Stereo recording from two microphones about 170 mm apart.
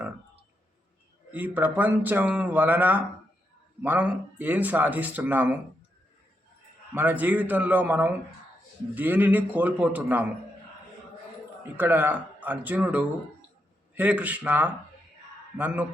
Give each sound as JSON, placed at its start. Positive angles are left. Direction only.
{"t": 1.3, "sound": "speech", "side_deg": -10}
{"t": 6.9, "sound": "speech", "side_deg": -10}
{"t": 11.8, "sound": "speech", "side_deg": -10}